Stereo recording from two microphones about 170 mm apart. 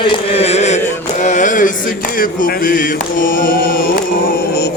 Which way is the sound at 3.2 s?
55° left (ahead or behind).